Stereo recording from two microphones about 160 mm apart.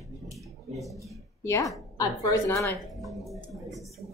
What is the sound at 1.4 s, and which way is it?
A woman's voice, 15° left (ahead or behind).